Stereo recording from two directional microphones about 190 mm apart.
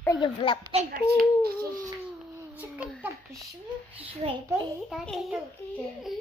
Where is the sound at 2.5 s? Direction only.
5° right (ahead or behind).